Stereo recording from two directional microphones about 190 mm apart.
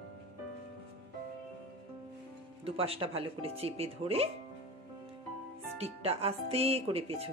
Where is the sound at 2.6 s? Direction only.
30° right (ahead or behind).